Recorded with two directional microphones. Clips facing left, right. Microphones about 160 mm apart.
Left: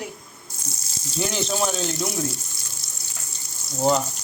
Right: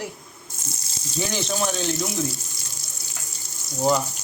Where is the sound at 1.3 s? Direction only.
Centre (ahead or behind).